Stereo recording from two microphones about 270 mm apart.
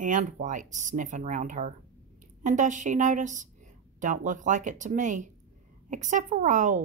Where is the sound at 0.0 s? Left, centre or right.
Right.